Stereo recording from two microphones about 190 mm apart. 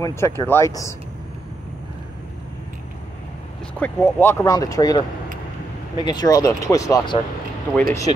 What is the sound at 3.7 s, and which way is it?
Speech, 10° left (ahead or behind).